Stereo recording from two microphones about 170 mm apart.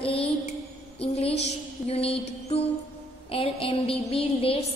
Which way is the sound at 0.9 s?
35° left (ahead or behind).